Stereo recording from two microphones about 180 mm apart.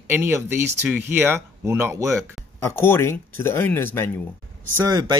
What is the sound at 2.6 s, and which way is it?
Speech, 15° left (ahead or behind).